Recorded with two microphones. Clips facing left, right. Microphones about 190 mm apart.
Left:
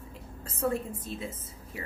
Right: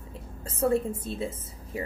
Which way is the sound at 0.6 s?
30° right (ahead or behind).